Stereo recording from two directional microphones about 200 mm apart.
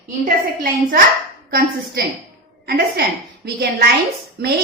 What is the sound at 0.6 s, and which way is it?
Speech, 45° right (ahead or behind).